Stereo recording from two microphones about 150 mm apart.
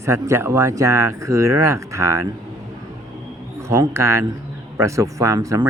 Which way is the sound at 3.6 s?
20° right (ahead or behind).